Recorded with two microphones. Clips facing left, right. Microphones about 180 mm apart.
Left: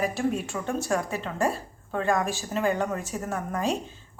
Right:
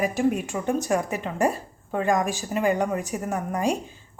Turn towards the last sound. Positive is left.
turn(degrees=-15)  # may be behind; listen again after turning